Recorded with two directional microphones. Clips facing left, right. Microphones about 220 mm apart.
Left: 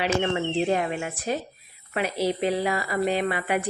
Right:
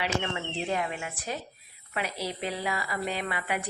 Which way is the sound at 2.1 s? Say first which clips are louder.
Left 9 dB; 25° left (ahead or behind).